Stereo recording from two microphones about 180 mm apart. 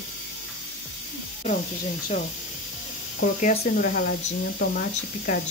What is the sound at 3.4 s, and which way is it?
Speech, 50° left (ahead or behind).